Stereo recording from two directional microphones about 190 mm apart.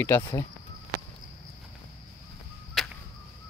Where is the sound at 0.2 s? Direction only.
20° left (ahead or behind).